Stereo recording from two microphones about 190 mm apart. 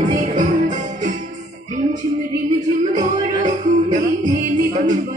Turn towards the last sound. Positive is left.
turn(degrees=-40)  # may be behind; listen again after turning